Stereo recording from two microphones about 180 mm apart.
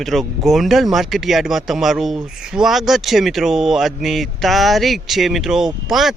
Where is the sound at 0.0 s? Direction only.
Centre (ahead or behind).